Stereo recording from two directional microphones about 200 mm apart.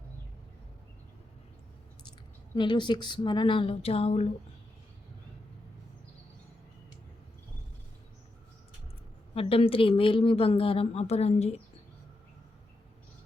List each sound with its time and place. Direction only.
2.6 s speech: 25° left (ahead or behind)
9.3 s speech: 30° left (ahead or behind)